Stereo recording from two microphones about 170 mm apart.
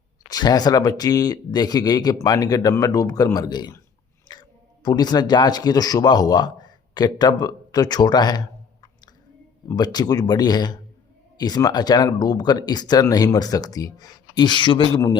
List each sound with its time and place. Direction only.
0.3 s speech: 25° left (ahead or behind)
9.6 s speech: 25° left (ahead or behind)